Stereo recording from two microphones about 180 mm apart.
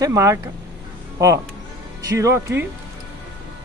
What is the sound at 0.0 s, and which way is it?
Speech, 15° right (ahead or behind).